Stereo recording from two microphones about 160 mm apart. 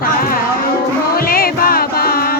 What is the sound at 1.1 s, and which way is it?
Music, 65° left (ahead or behind).